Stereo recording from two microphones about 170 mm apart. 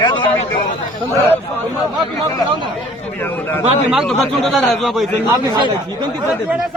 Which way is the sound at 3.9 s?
Centre (ahead or behind).